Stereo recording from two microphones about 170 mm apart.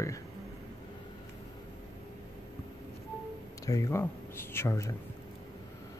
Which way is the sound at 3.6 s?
20° left (ahead or behind).